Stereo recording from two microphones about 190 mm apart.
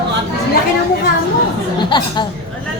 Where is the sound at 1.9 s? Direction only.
25° left (ahead or behind).